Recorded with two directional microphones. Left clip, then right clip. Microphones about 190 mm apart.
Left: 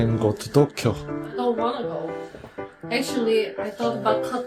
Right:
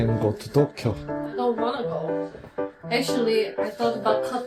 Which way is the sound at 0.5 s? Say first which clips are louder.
Left 3 dB; 30° left (ahead or behind).